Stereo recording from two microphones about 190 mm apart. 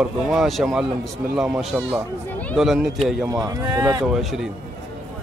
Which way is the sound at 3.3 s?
20° right (ahead or behind).